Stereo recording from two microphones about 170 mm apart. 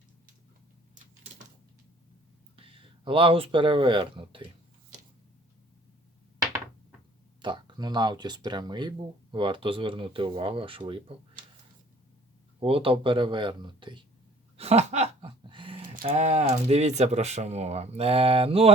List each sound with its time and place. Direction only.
2.6 s speech: 30° right (ahead or behind)
7.4 s speech: 25° right (ahead or behind)
12.5 s speech: 30° right (ahead or behind)
14.5 s a sound: 40° right (ahead or behind)
16.0 s speech: 40° right (ahead or behind)